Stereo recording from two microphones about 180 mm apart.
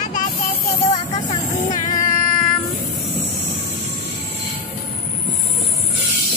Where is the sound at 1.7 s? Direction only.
45° left (ahead or behind).